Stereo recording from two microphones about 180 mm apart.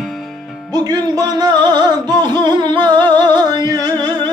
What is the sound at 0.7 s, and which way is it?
Music, 20° right (ahead or behind).